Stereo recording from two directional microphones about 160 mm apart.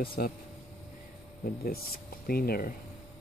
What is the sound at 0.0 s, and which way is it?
Speech, 70° left (ahead or behind).